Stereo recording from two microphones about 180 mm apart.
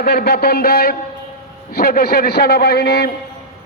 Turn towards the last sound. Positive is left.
turn(degrees=65)  # may be behind; listen again after turning